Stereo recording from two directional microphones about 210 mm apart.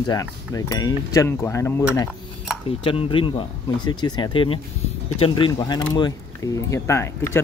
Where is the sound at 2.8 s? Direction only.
25° left (ahead or behind).